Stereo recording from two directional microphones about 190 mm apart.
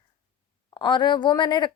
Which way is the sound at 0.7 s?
25° left (ahead or behind).